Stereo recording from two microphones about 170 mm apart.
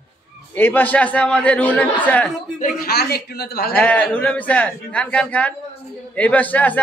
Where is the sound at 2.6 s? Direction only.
65° left (ahead or behind).